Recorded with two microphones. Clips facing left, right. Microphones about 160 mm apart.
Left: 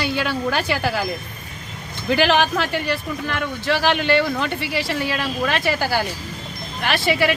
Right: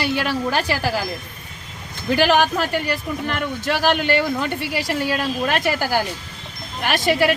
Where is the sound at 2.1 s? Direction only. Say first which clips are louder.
Right 1 dB; 45° right (ahead or behind).